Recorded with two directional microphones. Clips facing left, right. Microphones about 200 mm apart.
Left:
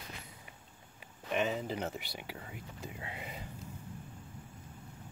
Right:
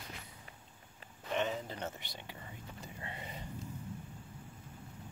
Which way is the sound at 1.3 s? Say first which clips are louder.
Left 3 dB; 10° left (ahead or behind).